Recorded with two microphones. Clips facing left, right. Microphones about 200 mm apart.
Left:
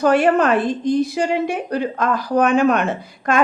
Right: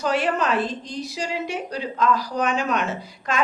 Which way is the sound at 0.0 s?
55° left (ahead or behind).